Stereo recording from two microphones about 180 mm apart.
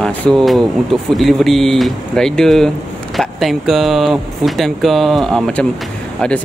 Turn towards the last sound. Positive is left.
turn(degrees=5)  # may be behind; listen again after turning